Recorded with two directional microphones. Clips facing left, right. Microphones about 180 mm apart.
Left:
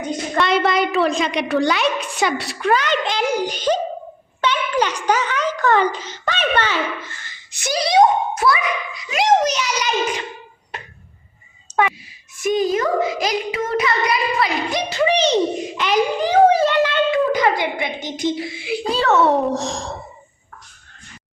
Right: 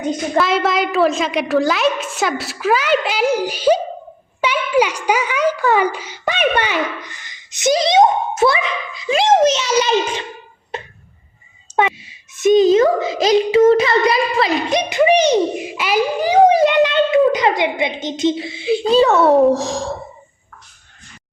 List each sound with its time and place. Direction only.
0.3 s a woman's voice: centre (ahead or behind); by 10.2 s 25° right (ahead or behind)
10.7 s a sound: 25° right (ahead or behind)
11.8 s speech: 25° right (ahead or behind); by 20.0 s centre (ahead or behind)